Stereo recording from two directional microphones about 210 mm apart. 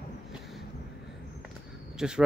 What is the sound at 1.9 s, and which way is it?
Speech, 5° right (ahead or behind).